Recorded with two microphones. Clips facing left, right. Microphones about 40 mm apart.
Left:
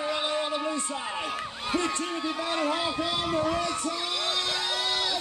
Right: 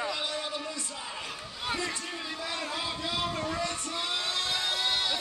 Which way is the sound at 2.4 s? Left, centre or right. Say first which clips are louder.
Left 7 dB; left.